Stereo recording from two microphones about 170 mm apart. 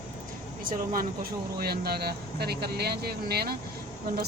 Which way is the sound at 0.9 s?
60° right (ahead or behind).